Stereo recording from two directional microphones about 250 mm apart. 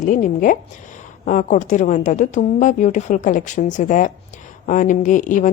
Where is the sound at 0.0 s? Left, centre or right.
Left.